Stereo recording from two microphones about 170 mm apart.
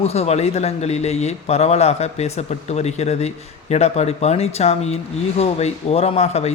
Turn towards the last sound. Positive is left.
turn(degrees=40)  # may be behind; listen again after turning